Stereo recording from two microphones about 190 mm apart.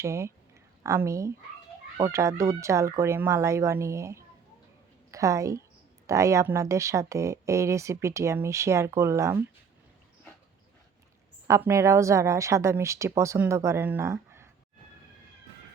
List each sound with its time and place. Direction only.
0.0 s a woman's voice: 15° right (ahead or behind)
11.4 s speech: 15° right (ahead or behind)